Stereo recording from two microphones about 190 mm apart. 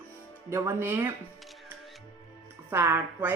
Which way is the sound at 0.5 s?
15° right (ahead or behind).